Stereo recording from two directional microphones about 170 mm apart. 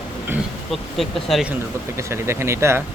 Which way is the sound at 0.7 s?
Centre (ahead or behind).